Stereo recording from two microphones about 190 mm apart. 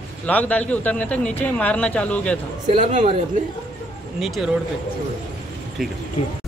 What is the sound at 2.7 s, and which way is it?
Speech, 40° right (ahead or behind).